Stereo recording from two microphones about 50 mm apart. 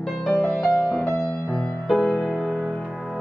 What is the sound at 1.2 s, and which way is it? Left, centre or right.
Music, centre.